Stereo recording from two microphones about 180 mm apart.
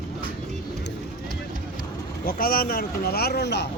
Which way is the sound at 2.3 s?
55° left (ahead or behind).